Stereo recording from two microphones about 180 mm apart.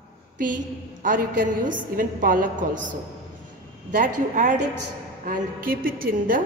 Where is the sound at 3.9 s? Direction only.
45° right (ahead or behind).